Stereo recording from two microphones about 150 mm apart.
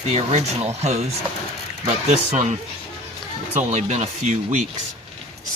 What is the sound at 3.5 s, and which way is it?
Speech, 50° right (ahead or behind).